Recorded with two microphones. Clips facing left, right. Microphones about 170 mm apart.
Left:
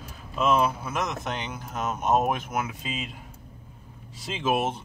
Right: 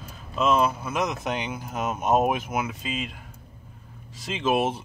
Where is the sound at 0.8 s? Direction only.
Centre (ahead or behind).